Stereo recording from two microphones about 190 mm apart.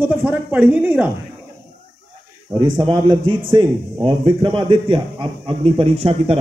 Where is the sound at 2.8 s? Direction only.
25° right (ahead or behind).